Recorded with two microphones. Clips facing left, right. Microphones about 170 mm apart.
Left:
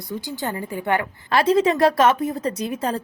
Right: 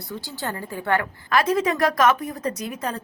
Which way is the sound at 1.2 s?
30° left (ahead or behind).